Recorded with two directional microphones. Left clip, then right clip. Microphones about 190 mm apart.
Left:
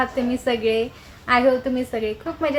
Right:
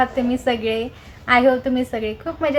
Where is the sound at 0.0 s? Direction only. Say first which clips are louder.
Right 3 dB; centre (ahead or behind).